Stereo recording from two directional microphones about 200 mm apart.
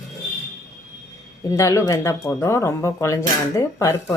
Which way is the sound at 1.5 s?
15° left (ahead or behind).